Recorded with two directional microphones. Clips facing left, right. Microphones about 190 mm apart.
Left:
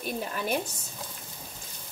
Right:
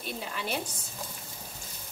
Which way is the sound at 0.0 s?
45° left (ahead or behind).